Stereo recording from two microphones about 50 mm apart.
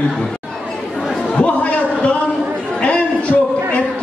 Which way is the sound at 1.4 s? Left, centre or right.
Left.